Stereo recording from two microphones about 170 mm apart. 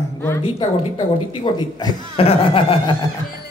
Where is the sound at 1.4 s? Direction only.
25° left (ahead or behind).